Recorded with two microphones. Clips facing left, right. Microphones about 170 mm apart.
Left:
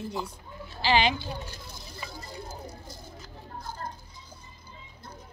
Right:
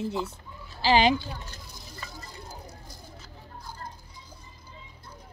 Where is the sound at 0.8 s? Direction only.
40° right (ahead or behind).